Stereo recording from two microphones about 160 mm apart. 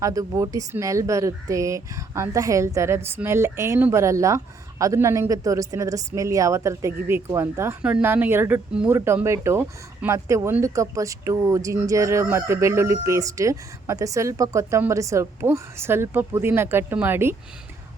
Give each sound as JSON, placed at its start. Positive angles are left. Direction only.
{"t": 0.0, "sound": "speech", "side_deg": -20}